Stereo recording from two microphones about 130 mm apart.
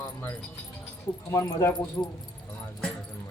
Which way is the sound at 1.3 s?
25° left (ahead or behind).